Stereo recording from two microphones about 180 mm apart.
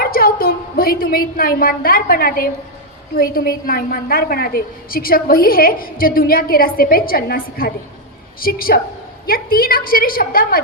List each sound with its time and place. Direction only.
0.0 s a woman's voice: 55° left (ahead or behind)